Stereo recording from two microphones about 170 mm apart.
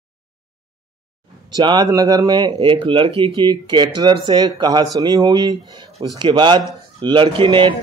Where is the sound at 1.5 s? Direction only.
25° right (ahead or behind).